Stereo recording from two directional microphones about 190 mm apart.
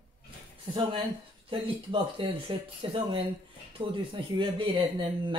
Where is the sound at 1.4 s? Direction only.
30° right (ahead or behind).